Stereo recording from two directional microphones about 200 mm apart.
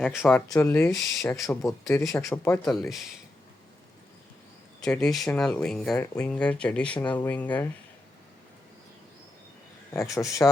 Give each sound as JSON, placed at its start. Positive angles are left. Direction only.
{"t": 0.0, "sound": "speech", "side_deg": 5}
{"t": 4.8, "sound": "speech", "side_deg": 0}
{"t": 9.9, "sound": "speech", "side_deg": 15}